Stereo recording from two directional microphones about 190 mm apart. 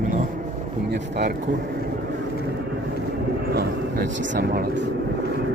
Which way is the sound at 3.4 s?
55° right (ahead or behind).